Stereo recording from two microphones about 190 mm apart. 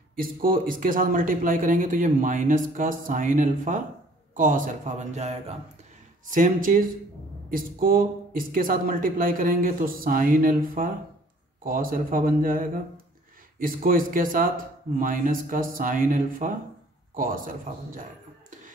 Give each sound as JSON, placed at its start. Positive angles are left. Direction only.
{"t": 0.1, "sound": "speech", "side_deg": -50}
{"t": 6.3, "sound": "speech", "side_deg": -45}